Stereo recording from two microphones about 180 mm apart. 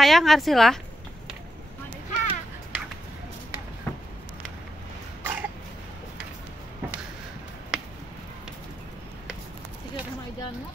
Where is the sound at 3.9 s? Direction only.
10° left (ahead or behind).